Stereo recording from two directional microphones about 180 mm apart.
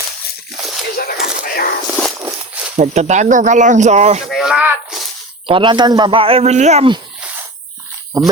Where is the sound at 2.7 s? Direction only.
40° right (ahead or behind).